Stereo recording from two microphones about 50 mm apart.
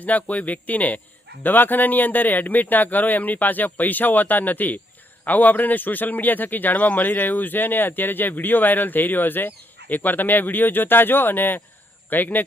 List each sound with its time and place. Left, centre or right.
0.0 s speech: left